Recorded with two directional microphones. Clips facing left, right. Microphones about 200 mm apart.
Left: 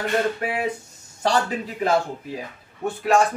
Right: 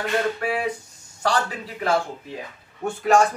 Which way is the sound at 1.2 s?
25° left (ahead or behind).